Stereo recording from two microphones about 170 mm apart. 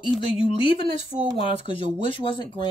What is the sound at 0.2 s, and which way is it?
Speech, 30° left (ahead or behind).